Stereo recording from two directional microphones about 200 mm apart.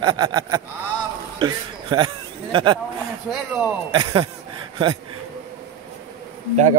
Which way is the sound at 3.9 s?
25° right (ahead or behind).